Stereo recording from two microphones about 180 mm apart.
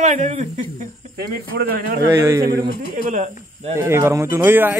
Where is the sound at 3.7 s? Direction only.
15° right (ahead or behind).